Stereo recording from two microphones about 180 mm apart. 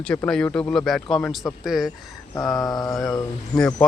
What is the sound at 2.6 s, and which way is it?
Mantra, 20° left (ahead or behind).